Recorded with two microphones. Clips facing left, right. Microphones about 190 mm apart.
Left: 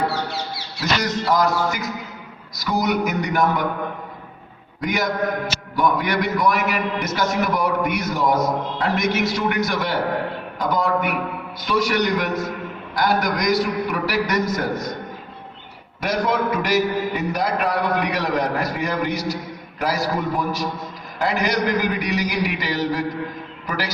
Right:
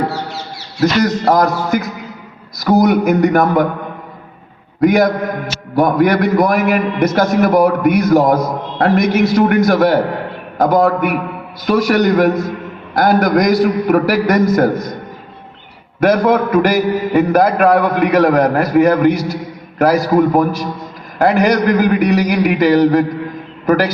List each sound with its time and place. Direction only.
0.8 s a man's voice: 50° right (ahead or behind)
4.8 s a man's voice: 55° right (ahead or behind)
16.0 s a man's voice: 55° right (ahead or behind)